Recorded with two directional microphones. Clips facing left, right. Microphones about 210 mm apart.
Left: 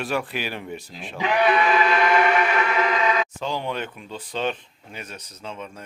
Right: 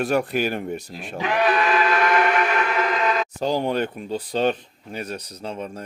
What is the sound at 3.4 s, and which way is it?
Speech, 40° right (ahead or behind).